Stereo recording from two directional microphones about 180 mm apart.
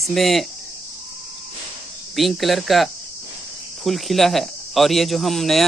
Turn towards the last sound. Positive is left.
turn(degrees=0)  # may be behind; listen again after turning